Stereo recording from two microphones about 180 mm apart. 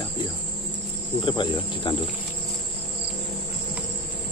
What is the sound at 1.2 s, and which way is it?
Cricket, 25° left (ahead or behind).